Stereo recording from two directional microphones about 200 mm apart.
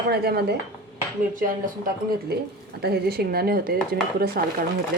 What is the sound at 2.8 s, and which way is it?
A woman's voice, 55° right (ahead or behind).